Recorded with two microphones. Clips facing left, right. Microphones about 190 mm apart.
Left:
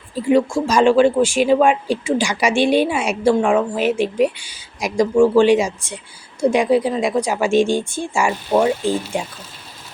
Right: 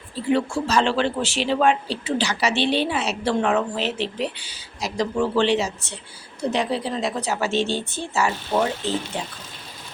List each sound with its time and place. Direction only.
0.7 s a woman's voice: 10° left (ahead or behind)